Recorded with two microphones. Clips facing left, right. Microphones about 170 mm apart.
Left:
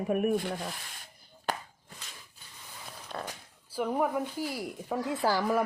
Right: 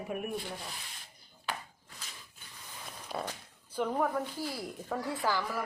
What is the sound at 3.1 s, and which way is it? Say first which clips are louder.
Speech: right 1 dB; 5° right (ahead or behind).